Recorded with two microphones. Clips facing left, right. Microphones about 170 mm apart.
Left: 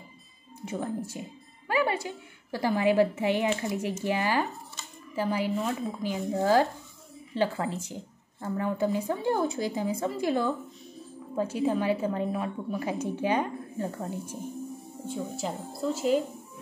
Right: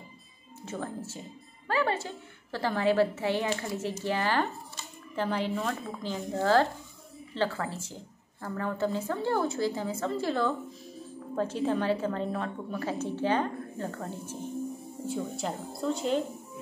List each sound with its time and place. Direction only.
0.6 s a woman's voice: 15° left (ahead or behind)
15.0 s a woman's voice: centre (ahead or behind)